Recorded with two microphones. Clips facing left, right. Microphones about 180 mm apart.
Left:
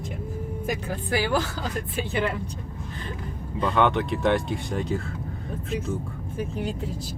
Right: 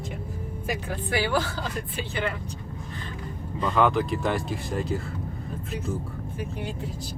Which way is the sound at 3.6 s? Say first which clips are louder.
Even; centre (ahead or behind).